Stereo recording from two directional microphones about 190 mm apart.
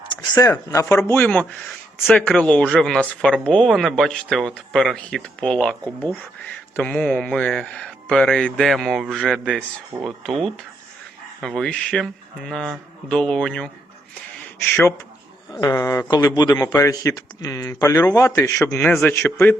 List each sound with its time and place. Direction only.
0.3 s a man's voice: 15° left (ahead or behind)
15.5 s a man's voice: 15° left (ahead or behind)